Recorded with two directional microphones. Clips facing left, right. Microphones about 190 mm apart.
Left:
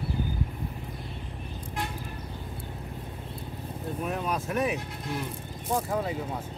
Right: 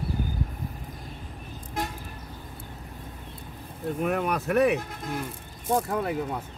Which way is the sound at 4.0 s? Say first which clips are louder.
Right 4 dB; 65° right (ahead or behind).